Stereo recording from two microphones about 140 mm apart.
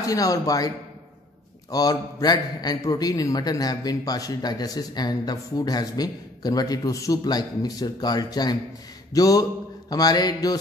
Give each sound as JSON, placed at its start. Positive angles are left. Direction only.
{"t": 0.0, "sound": "a man's voice", "side_deg": 25}
{"t": 9.1, "sound": "mantra", "side_deg": 25}